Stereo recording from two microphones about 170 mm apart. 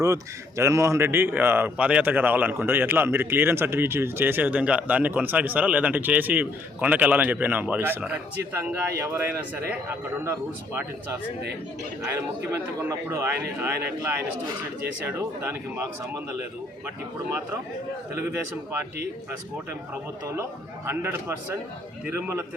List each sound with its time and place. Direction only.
0.0 s a man's voice: 20° right (ahead or behind)
12.5 s a man's voice: 15° right (ahead or behind)
15.0 s a man's voice: 10° right (ahead or behind)
20.8 s a man's voice: 15° right (ahead or behind)